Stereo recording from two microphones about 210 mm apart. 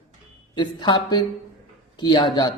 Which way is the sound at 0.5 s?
20° left (ahead or behind).